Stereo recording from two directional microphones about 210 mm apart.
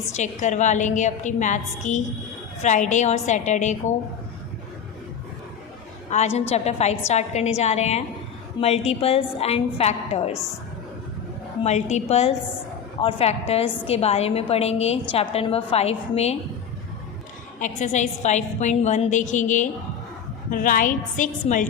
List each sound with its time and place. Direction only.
0.2 s a woman's voice: 35° left (ahead or behind)
6.1 s a woman's voice: 30° left (ahead or behind)
11.6 s a woman's voice: 35° left (ahead or behind)
17.6 s a woman's voice: 35° left (ahead or behind)